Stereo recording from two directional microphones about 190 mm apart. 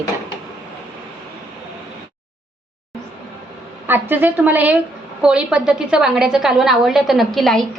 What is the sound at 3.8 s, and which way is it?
A woman's voice, 10° right (ahead or behind).